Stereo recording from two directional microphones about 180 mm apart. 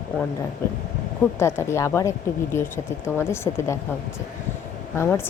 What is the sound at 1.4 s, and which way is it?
Speech, 15° left (ahead or behind).